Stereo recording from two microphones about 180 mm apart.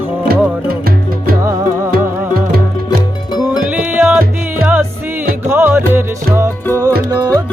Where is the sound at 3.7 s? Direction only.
10° right (ahead or behind).